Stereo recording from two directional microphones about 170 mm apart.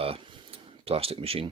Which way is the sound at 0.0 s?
35° right (ahead or behind).